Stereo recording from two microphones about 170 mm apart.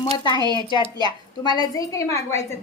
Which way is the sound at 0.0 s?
25° left (ahead or behind).